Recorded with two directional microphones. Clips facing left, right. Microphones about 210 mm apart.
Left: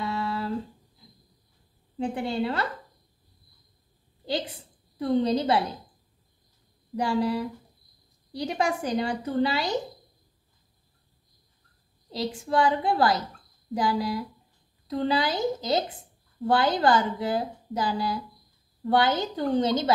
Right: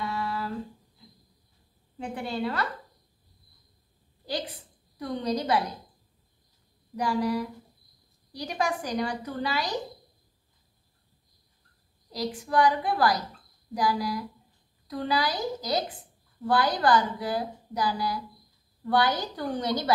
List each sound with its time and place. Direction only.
0.0 s a sound: 25° left (ahead or behind)
2.0 s a woman's voice: 25° left (ahead or behind)
4.3 s a woman's voice: 25° left (ahead or behind)
7.0 s a woman's voice: 25° left (ahead or behind)
12.1 s a woman's voice: 25° left (ahead or behind)